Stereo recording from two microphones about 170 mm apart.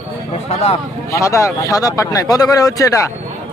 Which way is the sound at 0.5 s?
35° left (ahead or behind).